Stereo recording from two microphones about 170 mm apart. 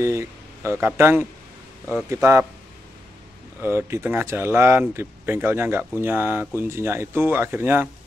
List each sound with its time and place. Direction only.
0.0 s speech: 15° right (ahead or behind)
3.6 s speech: 15° right (ahead or behind)